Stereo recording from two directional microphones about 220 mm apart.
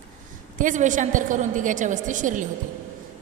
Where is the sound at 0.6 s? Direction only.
35° right (ahead or behind).